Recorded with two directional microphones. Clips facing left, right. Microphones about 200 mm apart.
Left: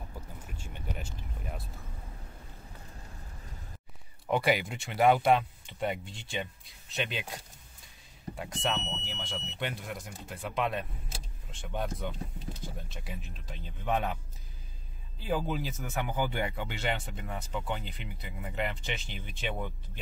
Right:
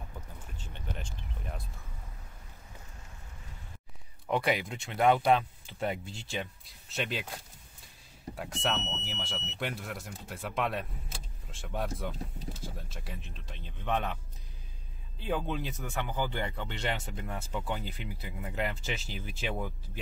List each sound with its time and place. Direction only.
0.6 s vehicle: 10° left (ahead or behind)
4.3 s speech: centre (ahead or behind)
8.4 s speech: centre (ahead or behind)
8.7 s speech: 15° left (ahead or behind)
9.0 s speech: centre (ahead or behind)
15.1 s speech: 5° left (ahead or behind)